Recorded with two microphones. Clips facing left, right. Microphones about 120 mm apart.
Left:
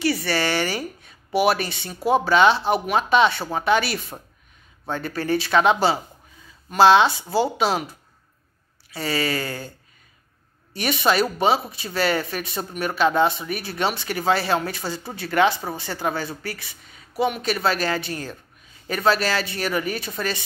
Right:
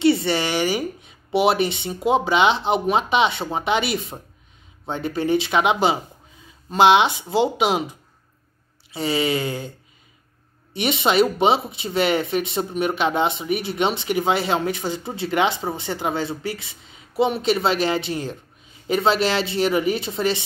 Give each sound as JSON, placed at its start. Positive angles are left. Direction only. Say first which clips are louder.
{"t": 0.0, "sound": "speech", "louder": "right 4 dB", "side_deg": -25}
{"t": 8.9, "sound": "speech", "louder": "right 3 dB", "side_deg": -20}
{"t": 10.7, "sound": "speech", "louder": "right 1 dB", "side_deg": -20}